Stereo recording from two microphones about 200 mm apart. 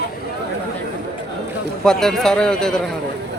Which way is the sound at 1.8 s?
5° left (ahead or behind).